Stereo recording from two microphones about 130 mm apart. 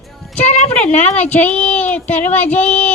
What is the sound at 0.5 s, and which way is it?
Speech, 60° left (ahead or behind).